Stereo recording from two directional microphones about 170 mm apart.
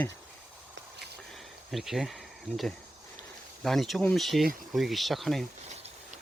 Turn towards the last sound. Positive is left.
turn(degrees=0)  # may be behind; listen again after turning